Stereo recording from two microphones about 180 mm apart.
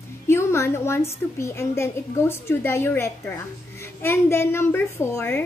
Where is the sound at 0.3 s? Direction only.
15° left (ahead or behind).